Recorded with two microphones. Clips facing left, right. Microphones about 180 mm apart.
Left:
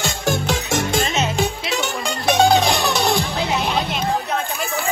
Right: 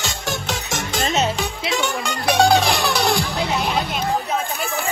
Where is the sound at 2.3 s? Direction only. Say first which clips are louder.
Even; 20° left (ahead or behind).